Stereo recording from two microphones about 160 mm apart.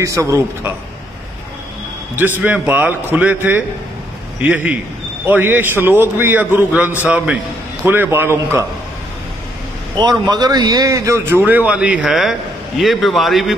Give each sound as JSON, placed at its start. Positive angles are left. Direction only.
{"t": 0.0, "sound": "a man's voice", "side_deg": -20}
{"t": 2.1, "sound": "a man's voice", "side_deg": -10}
{"t": 9.9, "sound": "a man's voice", "side_deg": -25}